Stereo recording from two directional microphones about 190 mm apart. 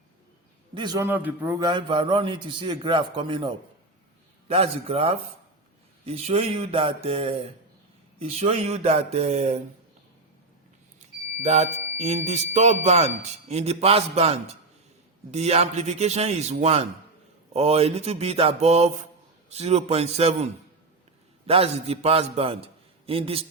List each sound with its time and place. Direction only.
0.7 s a man's voice: 25° right (ahead or behind)
1.6 s a man's voice: 25° right (ahead or behind)
4.4 s mantra: 30° right (ahead or behind)
11.4 s mantra: 35° right (ahead or behind)
21.4 s a man's voice: 30° right (ahead or behind)